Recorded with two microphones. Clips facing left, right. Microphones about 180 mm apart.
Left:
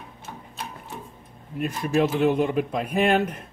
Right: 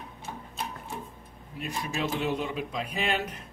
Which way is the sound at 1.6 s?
55° left (ahead or behind).